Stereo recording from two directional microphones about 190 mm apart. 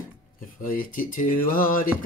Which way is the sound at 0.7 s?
45° left (ahead or behind).